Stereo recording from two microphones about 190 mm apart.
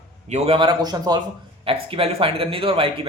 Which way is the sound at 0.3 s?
35° right (ahead or behind).